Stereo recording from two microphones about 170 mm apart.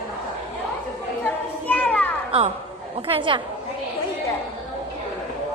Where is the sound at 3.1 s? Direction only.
30° right (ahead or behind).